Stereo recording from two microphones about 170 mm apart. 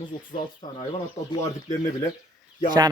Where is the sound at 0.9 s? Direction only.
25° left (ahead or behind).